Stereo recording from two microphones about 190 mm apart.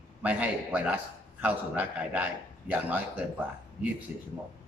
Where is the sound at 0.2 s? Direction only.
5° right (ahead or behind).